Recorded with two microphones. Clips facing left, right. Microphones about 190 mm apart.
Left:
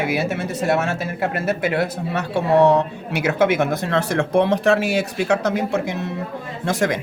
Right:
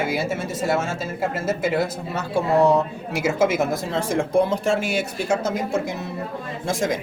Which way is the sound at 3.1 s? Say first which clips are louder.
Left 2 dB; 65° left (ahead or behind).